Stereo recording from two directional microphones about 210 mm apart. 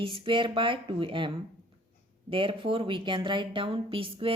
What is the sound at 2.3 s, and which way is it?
A woman's voice, 25° right (ahead or behind).